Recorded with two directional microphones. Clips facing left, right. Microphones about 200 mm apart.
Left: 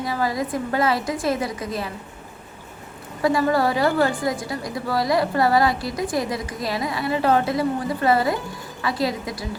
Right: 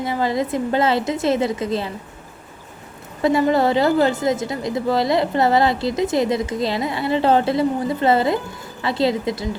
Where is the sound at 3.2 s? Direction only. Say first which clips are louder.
Right 3 dB; 25° right (ahead or behind).